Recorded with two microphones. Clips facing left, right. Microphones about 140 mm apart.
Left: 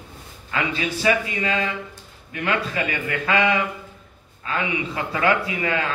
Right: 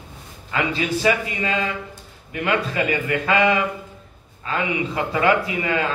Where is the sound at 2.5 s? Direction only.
30° right (ahead or behind).